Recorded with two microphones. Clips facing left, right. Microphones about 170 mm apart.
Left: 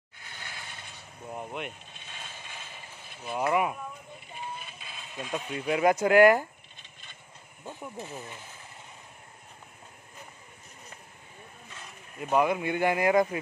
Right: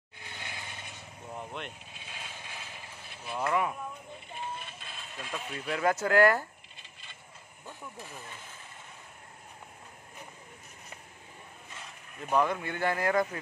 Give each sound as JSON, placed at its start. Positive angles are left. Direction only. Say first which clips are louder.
{"t": 0.4, "sound": "vehicle", "louder": "right 1 dB", "side_deg": -20}
{"t": 1.3, "sound": "vehicle", "louder": "left 4 dB", "side_deg": 10}
{"t": 1.9, "sound": "vehicle", "louder": "even", "side_deg": -5}
{"t": 3.3, "sound": "speech", "louder": "left 3 dB", "side_deg": 15}
{"t": 4.3, "sound": "sheep", "louder": "even", "side_deg": 0}
{"t": 5.7, "sound": "speech", "louder": "left 5 dB", "side_deg": 15}
{"t": 7.6, "sound": "speech", "louder": "left 6 dB", "side_deg": 25}
{"t": 12.2, "sound": "speech", "louder": "left 3 dB", "side_deg": 10}